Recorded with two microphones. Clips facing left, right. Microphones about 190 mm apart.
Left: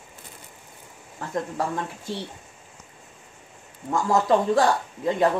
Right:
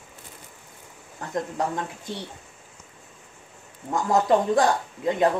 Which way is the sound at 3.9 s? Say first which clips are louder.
Even; 20° right (ahead or behind).